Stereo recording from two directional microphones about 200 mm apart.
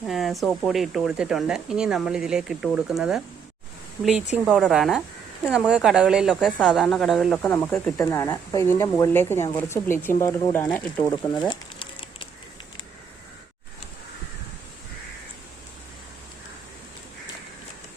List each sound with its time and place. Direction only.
0.0 s speech: centre (ahead or behind)
4.4 s a woman's voice: centre (ahead or behind)
10.9 s a sound: 20° left (ahead or behind)